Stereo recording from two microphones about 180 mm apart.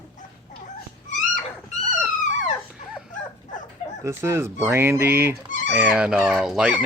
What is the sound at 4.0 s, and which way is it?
Speech, 15° right (ahead or behind).